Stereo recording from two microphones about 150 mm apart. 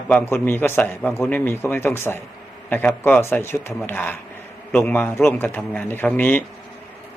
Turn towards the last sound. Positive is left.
turn(degrees=10)  # may be behind; listen again after turning